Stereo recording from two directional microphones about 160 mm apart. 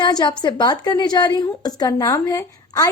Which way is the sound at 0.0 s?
25° left (ahead or behind).